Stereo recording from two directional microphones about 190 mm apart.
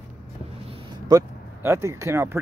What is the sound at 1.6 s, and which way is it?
Speech, 15° right (ahead or behind).